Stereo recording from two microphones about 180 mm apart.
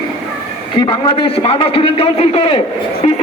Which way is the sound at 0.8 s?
30° left (ahead or behind).